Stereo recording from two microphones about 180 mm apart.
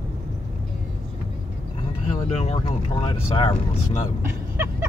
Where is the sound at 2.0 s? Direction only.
40° left (ahead or behind).